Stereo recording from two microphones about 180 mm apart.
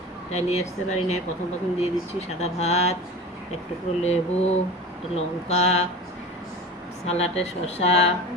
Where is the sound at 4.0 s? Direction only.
35° left (ahead or behind).